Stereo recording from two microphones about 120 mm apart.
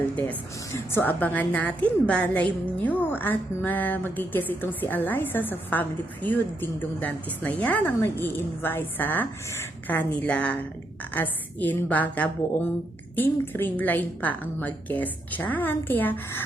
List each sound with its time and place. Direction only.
0.7 s a woman's voice: 20° left (ahead or behind)